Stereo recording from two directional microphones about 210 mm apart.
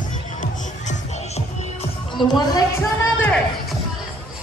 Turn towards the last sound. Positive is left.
turn(degrees=10)  # may be behind; listen again after turning